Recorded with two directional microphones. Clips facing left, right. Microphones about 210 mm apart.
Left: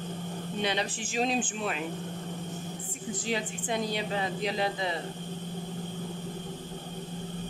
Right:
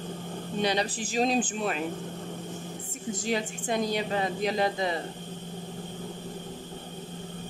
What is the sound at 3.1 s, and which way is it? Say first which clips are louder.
Speech: right 3 dB; 45° right (ahead or behind).